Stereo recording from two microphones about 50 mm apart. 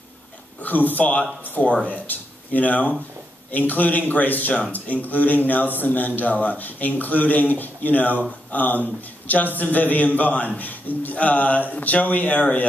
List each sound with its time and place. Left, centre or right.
0.6 s speech: left